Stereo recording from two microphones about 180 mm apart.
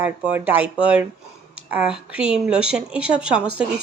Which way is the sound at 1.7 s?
5° right (ahead or behind).